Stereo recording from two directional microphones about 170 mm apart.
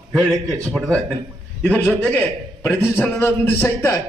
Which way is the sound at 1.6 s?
10° left (ahead or behind).